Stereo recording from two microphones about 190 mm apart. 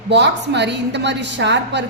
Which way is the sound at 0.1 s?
65° right (ahead or behind).